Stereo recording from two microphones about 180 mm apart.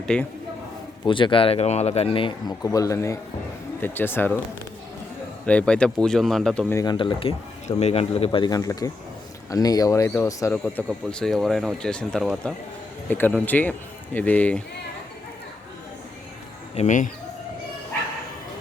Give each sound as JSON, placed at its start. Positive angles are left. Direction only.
{"t": 0.1, "sound": "speech", "side_deg": 5}
{"t": 1.0, "sound": "speech", "side_deg": 25}
{"t": 5.5, "sound": "speech", "side_deg": 5}
{"t": 6.7, "sound": "speech", "side_deg": 25}
{"t": 16.7, "sound": "speech", "side_deg": 40}